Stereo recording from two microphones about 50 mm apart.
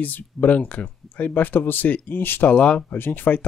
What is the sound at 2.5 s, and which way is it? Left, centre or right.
Speech, left.